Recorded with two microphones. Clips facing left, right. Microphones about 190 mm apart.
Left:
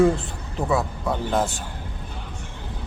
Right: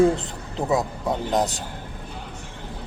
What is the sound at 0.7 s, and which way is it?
Speech, 15° right (ahead or behind).